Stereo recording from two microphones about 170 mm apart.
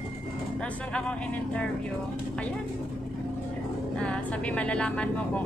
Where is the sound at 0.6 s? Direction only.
5° left (ahead or behind).